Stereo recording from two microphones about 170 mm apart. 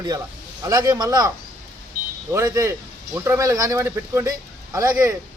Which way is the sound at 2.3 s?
20° right (ahead or behind).